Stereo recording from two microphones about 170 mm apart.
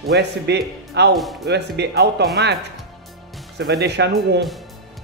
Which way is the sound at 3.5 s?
75° right (ahead or behind).